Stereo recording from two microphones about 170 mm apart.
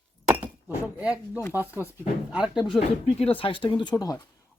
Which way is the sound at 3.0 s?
35° left (ahead or behind).